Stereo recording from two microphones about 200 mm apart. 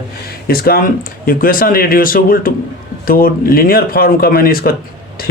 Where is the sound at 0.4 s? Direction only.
50° left (ahead or behind).